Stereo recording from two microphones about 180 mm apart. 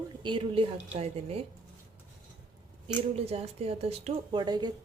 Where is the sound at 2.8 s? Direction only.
35° right (ahead or behind).